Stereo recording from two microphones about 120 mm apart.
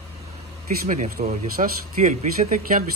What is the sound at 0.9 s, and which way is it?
Speech, 90° right.